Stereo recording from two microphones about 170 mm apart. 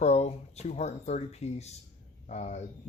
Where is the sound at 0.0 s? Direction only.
40° left (ahead or behind).